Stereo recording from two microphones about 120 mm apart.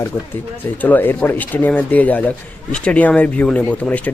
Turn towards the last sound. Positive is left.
turn(degrees=10)  # may be behind; listen again after turning